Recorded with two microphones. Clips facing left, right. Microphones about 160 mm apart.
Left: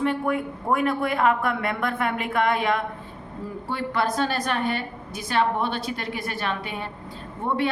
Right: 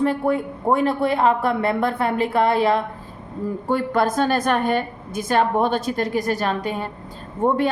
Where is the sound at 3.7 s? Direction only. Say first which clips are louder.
Right 5 dB; 45° right (ahead or behind).